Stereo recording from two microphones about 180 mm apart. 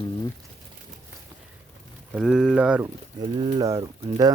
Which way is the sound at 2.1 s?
5° right (ahead or behind).